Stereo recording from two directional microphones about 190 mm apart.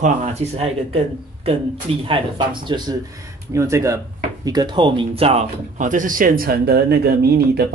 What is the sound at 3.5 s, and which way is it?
Speech, 15° right (ahead or behind).